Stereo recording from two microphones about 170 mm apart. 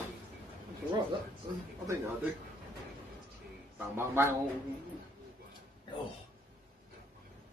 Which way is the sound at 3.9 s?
15° right (ahead or behind).